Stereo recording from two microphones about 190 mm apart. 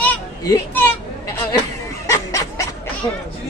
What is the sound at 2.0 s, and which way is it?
Snicker, 15° left (ahead or behind).